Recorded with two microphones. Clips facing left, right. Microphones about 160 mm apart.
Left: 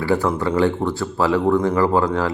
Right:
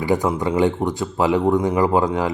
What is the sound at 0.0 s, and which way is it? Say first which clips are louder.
Speech: even; 15° right (ahead or behind).